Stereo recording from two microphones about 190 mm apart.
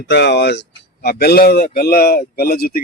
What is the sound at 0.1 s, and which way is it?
Speech, 60° left (ahead or behind).